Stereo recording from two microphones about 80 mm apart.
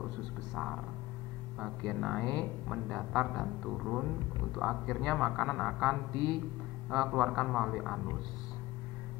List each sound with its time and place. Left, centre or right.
0.6 s a man's voice: centre
2.7 s a man's voice: centre